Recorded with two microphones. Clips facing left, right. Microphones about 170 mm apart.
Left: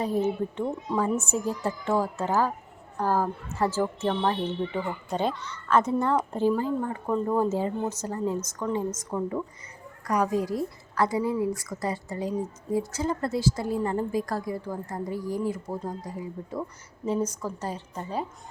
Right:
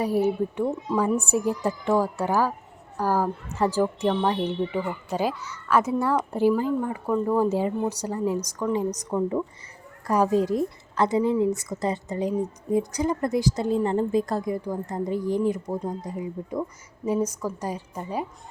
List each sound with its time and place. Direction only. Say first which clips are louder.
0.0 s a woman's voice: right 3 dB; 10° right (ahead or behind)